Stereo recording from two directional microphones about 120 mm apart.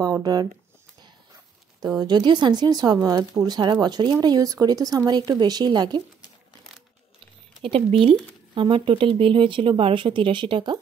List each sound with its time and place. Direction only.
0.0 s speech: 30° right (ahead or behind)
1.8 s speech: 35° right (ahead or behind)
7.6 s speech: 50° right (ahead or behind)